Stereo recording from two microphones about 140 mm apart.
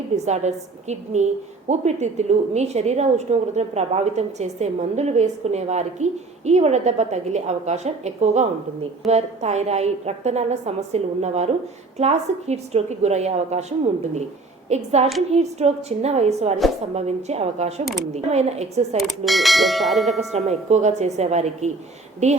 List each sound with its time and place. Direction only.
0.3 s a woman's voice: 55° right (ahead or behind)
18.9 s bell: centre (ahead or behind)
20.3 s a woman's voice: 50° right (ahead or behind)